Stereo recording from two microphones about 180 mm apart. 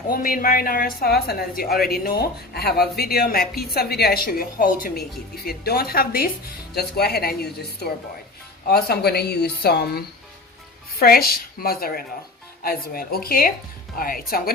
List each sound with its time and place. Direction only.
0.1 s a woman's voice: 50° left (ahead or behind)
11.0 s a woman's voice: 55° left (ahead or behind)